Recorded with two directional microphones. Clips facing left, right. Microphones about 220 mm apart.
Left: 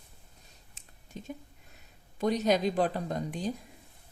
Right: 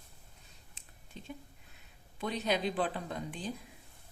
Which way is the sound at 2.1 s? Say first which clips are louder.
Left 7 dB; 40° left (ahead or behind).